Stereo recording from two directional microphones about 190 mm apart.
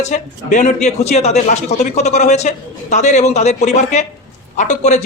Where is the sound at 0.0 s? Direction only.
40° left (ahead or behind).